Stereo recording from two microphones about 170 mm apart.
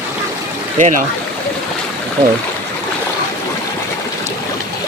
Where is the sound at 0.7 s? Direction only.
50° right (ahead or behind).